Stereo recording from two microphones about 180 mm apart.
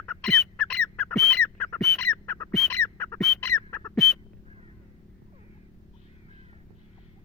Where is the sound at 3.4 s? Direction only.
15° left (ahead or behind).